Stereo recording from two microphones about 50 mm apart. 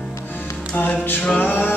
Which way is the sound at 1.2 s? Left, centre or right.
Left.